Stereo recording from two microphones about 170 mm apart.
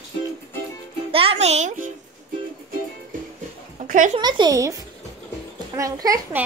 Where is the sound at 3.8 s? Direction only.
50° right (ahead or behind).